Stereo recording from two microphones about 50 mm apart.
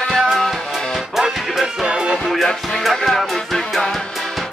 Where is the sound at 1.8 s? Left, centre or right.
Centre.